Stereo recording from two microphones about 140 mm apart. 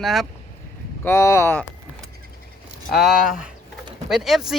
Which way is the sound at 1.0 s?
20° left (ahead or behind).